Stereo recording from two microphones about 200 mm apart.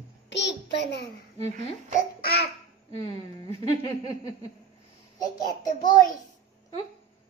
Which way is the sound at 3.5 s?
25° right (ahead or behind).